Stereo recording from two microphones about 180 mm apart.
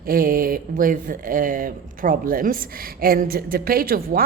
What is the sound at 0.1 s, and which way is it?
A woman's voice, 55° right (ahead or behind).